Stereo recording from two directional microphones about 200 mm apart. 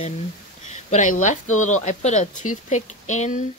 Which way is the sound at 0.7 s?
40° left (ahead or behind).